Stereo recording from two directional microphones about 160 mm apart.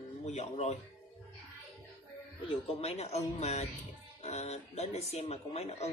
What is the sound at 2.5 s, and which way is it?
Speech, 40° left (ahead or behind).